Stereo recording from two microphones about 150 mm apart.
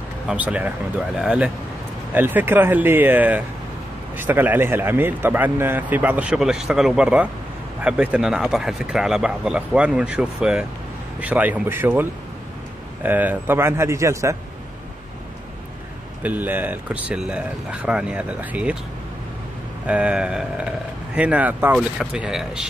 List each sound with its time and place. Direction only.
0.3 s speech: 10° right (ahead or behind)
13.0 s speech: 10° right (ahead or behind)
16.2 s speech: 10° right (ahead or behind)
19.9 s speech: 5° right (ahead or behind)